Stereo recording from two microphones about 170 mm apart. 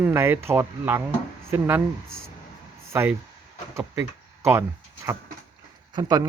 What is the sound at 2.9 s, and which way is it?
Speech, 10° right (ahead or behind).